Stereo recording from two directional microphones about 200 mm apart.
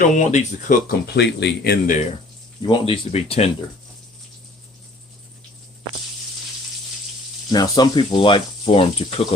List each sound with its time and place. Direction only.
0.1 s speech: 35° left (ahead or behind)
2.6 s speech: 25° left (ahead or behind)
7.5 s speech: 20° left (ahead or behind)